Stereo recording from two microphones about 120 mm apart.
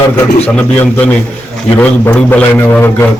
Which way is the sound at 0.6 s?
15° left (ahead or behind).